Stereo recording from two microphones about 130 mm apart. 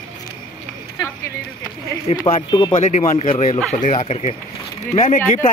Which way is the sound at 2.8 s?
65° left (ahead or behind).